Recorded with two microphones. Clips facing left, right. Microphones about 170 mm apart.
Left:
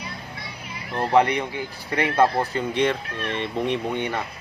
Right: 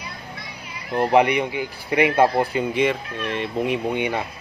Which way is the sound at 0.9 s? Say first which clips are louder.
Right 2 dB; 15° right (ahead or behind).